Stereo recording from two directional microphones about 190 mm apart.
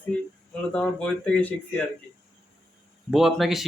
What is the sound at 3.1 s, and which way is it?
Speech, centre (ahead or behind).